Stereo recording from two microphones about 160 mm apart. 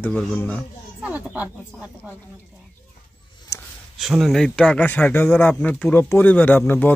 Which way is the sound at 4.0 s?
Centre (ahead or behind).